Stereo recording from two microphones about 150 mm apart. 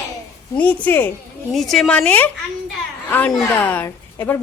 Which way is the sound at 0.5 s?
10° left (ahead or behind).